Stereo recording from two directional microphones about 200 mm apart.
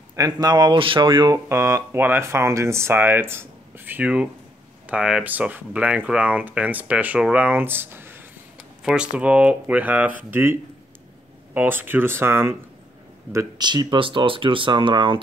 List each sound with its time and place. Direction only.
0.1 s speech: 20° right (ahead or behind)